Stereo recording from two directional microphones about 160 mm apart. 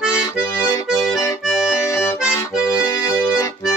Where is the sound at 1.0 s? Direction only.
20° left (ahead or behind).